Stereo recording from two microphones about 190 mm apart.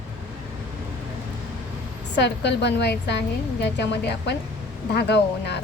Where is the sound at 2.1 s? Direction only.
65° left (ahead or behind).